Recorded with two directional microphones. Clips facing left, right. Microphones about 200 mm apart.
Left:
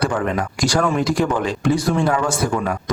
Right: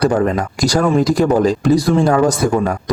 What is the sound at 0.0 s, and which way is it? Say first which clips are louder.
A man's voice: right 6 dB; 40° right (ahead or behind).